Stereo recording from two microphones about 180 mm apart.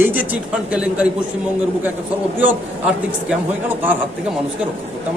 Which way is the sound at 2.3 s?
10° right (ahead or behind).